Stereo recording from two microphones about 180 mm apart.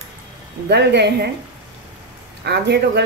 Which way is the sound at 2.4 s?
65° right (ahead or behind).